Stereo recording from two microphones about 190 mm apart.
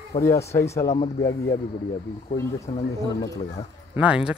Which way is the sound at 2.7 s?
20° left (ahead or behind).